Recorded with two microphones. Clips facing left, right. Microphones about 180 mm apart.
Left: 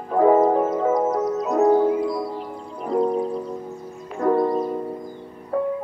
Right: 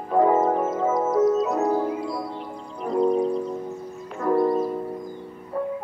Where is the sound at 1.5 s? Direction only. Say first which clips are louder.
Left 6 dB; 25° left (ahead or behind).